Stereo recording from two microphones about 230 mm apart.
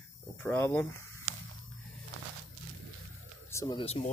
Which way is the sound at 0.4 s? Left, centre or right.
Centre.